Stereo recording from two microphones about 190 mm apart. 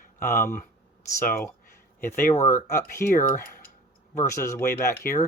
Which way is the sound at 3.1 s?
45° left (ahead or behind).